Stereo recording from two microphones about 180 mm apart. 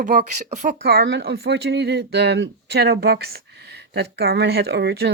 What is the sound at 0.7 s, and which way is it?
Speech, 65° right (ahead or behind).